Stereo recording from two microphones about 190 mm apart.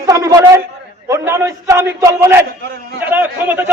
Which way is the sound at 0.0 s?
20° right (ahead or behind).